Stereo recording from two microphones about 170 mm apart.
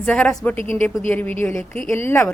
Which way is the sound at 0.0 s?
5° left (ahead or behind).